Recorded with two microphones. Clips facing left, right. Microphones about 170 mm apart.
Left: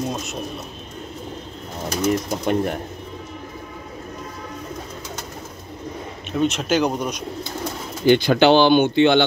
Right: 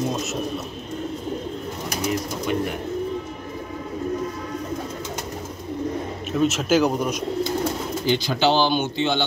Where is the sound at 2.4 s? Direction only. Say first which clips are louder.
Left 2 dB; 45° left (ahead or behind).